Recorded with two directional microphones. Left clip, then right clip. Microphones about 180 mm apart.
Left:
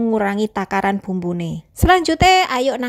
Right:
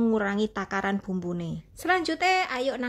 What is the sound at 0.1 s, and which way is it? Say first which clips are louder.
Speech: left 8 dB; 35° left (ahead or behind).